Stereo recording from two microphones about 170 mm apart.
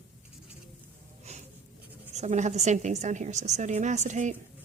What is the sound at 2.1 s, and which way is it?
A woman's voice, 45° right (ahead or behind).